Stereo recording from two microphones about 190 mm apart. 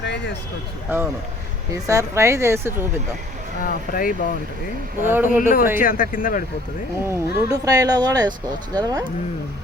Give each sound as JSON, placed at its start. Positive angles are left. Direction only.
{"t": 0.9, "sound": "a woman's voice", "side_deg": -10}
{"t": 3.6, "sound": "speech", "side_deg": 50}
{"t": 5.0, "sound": "a woman's voice", "side_deg": -10}
{"t": 5.4, "sound": "speech", "side_deg": 45}
{"t": 7.0, "sound": "speech", "side_deg": -15}